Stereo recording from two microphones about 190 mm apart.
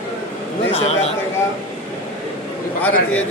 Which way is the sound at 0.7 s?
35° left (ahead or behind).